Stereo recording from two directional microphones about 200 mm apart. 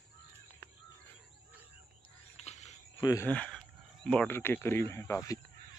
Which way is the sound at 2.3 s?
35° left (ahead or behind).